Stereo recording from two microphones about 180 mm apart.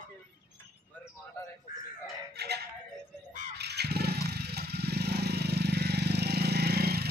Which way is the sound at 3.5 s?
65° right (ahead or behind).